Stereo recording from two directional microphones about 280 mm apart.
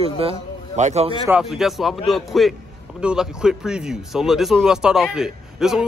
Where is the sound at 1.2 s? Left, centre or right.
Centre.